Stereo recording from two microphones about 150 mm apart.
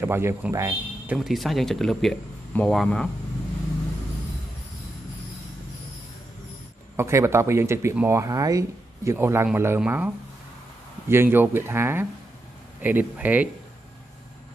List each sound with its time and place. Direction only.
0.0 s speech: 15° right (ahead or behind)
1.1 s speech: centre (ahead or behind)
7.0 s speech: 20° right (ahead or behind)